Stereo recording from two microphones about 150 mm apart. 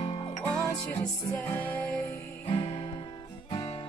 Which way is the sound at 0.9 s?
10° left (ahead or behind).